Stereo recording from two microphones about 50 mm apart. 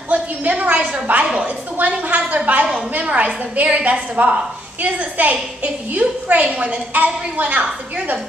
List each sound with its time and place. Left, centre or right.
0.1 s a woman's voice: right
1.2 s a woman's voice: centre
1.8 s a sound: right
2.6 s a woman's voice: right